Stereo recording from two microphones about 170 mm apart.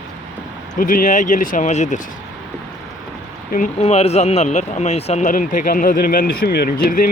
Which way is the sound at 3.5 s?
45° left (ahead or behind).